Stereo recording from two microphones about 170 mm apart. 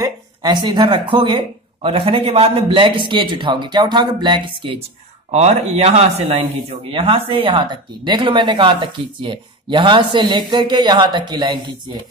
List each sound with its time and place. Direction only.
0.0 s speech: 25° right (ahead or behind)
5.3 s speech: 40° right (ahead or behind)